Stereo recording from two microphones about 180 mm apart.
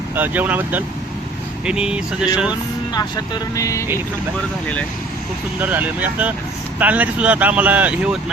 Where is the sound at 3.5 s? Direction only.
20° left (ahead or behind).